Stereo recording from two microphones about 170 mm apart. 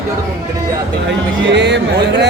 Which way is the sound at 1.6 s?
90° right.